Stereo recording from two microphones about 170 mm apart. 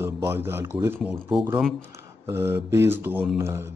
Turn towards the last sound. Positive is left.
turn(degrees=-15)  # may be behind; listen again after turning